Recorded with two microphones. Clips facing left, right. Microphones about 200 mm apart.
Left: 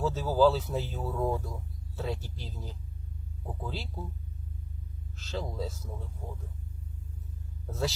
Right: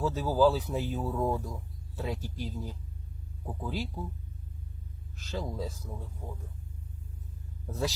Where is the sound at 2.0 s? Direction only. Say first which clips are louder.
Even; 15° right (ahead or behind).